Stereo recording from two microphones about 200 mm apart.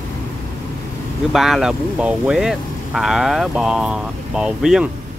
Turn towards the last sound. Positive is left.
turn(degrees=-5)  # may be behind; listen again after turning